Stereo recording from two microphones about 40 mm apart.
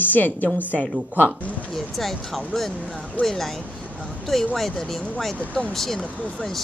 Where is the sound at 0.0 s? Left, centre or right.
Left.